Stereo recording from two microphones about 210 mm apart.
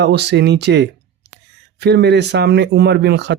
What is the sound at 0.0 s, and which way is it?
Speech, 50° right (ahead or behind).